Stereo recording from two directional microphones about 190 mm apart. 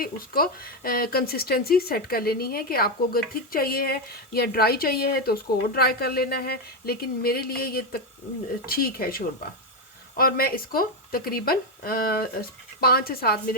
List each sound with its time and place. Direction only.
0.0 s speech: 50° left (ahead or behind)